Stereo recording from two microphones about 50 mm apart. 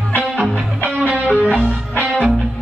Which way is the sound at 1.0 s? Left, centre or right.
Right.